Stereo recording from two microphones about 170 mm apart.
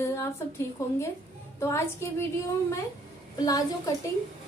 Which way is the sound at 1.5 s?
15° left (ahead or behind).